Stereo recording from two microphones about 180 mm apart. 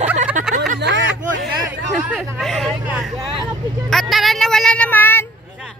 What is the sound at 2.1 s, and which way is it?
Speech, centre (ahead or behind).